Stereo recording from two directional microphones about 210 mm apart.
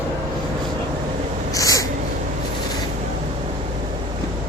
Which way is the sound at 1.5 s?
15° left (ahead or behind).